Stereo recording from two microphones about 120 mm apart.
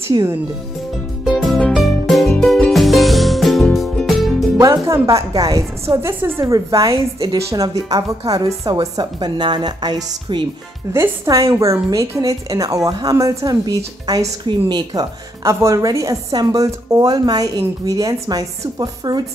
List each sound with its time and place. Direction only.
0.1 s a woman's voice: 25° right (ahead or behind)
1.2 s music: centre (ahead or behind)
4.6 s a woman's voice: 25° right (ahead or behind)
10.9 s a woman's voice: 25° right (ahead or behind)